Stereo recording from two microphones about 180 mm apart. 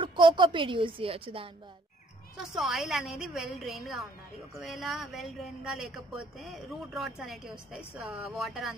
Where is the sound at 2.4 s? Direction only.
Centre (ahead or behind).